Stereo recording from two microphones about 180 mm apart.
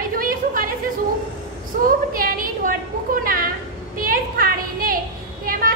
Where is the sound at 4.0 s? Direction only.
50° right (ahead or behind).